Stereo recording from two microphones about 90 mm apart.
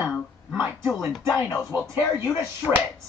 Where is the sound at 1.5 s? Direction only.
25° left (ahead or behind).